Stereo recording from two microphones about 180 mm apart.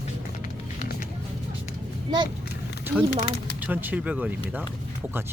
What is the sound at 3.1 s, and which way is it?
Speech, 65° left (ahead or behind).